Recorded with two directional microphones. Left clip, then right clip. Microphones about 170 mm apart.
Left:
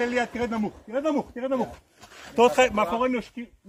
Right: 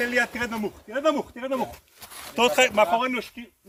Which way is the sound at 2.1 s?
65° right (ahead or behind).